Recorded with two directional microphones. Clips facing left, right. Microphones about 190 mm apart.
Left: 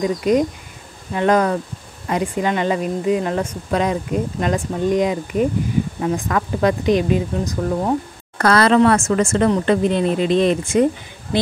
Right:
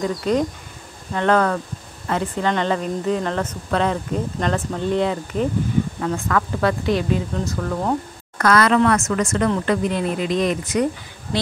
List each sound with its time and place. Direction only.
0.0 s speech: 15° left (ahead or behind)
8.4 s speech: 30° left (ahead or behind)